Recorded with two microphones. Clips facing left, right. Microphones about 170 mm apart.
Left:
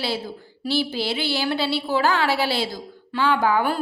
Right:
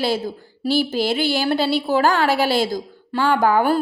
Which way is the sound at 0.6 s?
45° right (ahead or behind).